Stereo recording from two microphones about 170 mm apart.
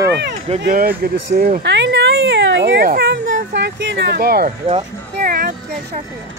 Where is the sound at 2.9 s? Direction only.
80° right; by 5.6 s 60° right (ahead or behind).